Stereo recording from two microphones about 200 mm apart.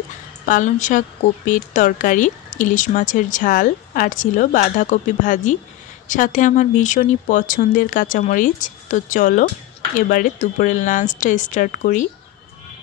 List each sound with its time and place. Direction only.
0.5 s a woman's voice: 40° left (ahead or behind)